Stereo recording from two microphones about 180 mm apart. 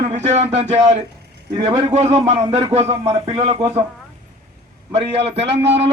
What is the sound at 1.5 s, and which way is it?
Speech, 30° right (ahead or behind).